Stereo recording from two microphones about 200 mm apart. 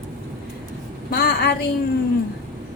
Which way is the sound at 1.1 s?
50° left (ahead or behind).